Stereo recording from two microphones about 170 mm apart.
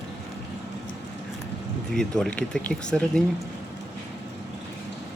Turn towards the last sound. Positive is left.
turn(degrees=5)  # may be behind; listen again after turning